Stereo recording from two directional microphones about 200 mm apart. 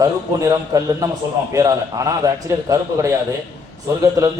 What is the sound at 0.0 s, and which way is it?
A man's voice, 15° right (ahead or behind).